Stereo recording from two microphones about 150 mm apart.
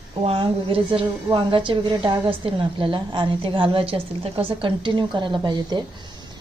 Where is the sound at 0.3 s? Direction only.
35° right (ahead or behind).